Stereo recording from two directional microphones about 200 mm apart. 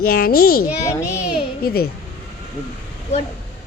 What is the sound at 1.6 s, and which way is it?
Speech, 50° left (ahead or behind).